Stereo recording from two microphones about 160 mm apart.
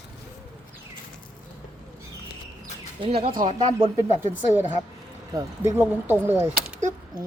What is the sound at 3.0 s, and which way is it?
Speech, 35° right (ahead or behind).